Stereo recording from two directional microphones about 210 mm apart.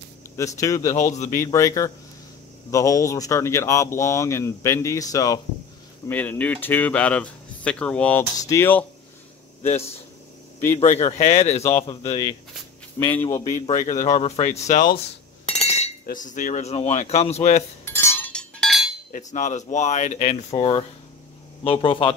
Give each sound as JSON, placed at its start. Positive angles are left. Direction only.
{"t": 0.4, "sound": "speech", "side_deg": 15}
{"t": 0.8, "sound": "speech", "side_deg": 35}
{"t": 1.3, "sound": "speech", "side_deg": 15}
{"t": 9.6, "sound": "speech", "side_deg": 30}
{"t": 11.6, "sound": "speech", "side_deg": 15}
{"t": 13.1, "sound": "speech", "side_deg": 10}
{"t": 13.4, "sound": "speech", "side_deg": 35}
{"t": 17.8, "sound": "chink", "side_deg": 10}
{"t": 19.1, "sound": "speech", "side_deg": 35}